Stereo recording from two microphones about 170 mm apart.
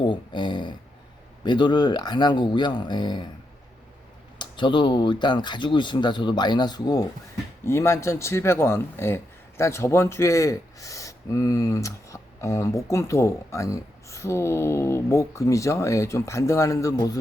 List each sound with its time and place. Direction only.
0.0 s speech: 30° left (ahead or behind)
4.4 s speech: 30° left (ahead or behind)